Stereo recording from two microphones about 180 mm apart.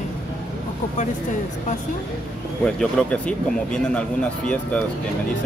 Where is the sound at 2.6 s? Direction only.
5° left (ahead or behind).